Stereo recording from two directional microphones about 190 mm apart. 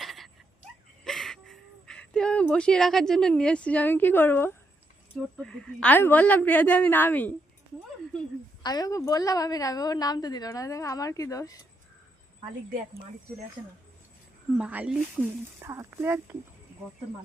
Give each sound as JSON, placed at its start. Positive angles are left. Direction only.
{"t": 0.0, "sound": "a sound", "side_deg": 0}
{"t": 5.4, "sound": "a woman's voice", "side_deg": 5}
{"t": 8.6, "sound": "a woman's voice", "side_deg": 20}
{"t": 14.6, "sound": "speech", "side_deg": -5}